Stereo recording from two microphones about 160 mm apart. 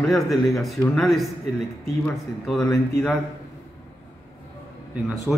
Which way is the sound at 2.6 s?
20° left (ahead or behind).